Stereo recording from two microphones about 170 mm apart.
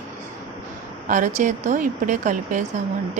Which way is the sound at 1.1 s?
50° right (ahead or behind).